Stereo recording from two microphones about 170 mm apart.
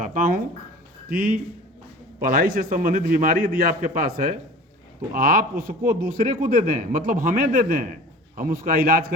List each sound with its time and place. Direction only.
0.0 s a man's voice: 50° right (ahead or behind)